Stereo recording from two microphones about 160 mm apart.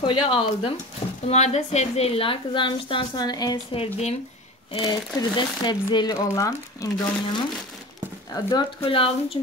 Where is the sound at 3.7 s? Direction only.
40° left (ahead or behind); by 6.8 s 20° left (ahead or behind).